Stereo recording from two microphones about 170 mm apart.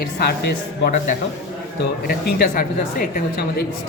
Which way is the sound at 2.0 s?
60° left (ahead or behind).